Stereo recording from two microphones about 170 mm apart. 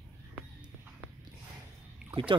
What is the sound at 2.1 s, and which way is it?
Boat, 30° right (ahead or behind).